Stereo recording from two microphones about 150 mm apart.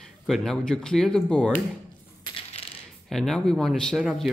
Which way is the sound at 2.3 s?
40° left (ahead or behind).